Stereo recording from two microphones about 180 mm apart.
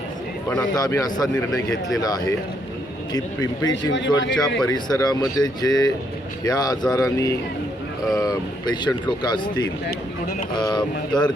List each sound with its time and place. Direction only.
0.8 s speech: 20° left (ahead or behind)